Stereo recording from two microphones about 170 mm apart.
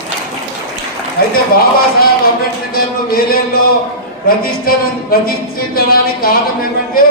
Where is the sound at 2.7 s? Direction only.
60° left (ahead or behind).